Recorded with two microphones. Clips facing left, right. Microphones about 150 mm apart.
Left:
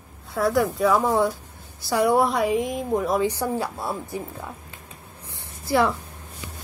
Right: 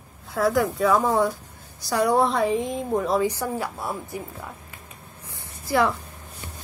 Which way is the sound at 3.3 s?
25° left (ahead or behind).